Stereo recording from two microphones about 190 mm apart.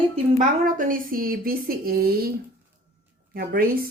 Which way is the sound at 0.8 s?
45° right (ahead or behind).